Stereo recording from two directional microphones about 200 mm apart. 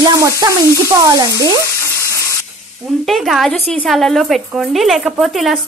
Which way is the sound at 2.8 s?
Centre (ahead or behind).